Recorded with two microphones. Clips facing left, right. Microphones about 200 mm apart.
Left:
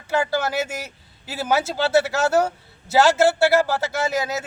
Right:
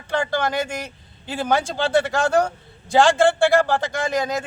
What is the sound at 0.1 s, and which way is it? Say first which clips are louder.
A man's voice: even; 5° left (ahead or behind).